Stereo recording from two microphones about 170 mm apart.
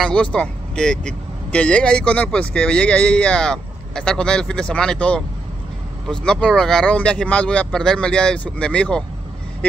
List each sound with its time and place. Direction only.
0.0 s speech: 5° left (ahead or behind)